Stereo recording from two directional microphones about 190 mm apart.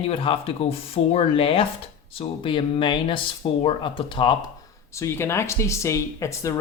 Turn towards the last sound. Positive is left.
turn(degrees=15)  # may be behind; listen again after turning